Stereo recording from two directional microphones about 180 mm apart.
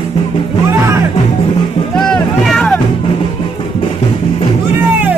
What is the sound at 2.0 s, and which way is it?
Music, centre (ahead or behind).